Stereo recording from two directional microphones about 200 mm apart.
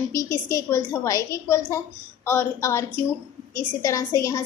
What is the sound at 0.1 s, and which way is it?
A woman's voice, 15° left (ahead or behind).